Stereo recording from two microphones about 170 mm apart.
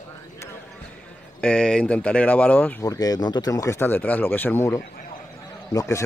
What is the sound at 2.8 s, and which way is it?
A man's voice, 20° left (ahead or behind).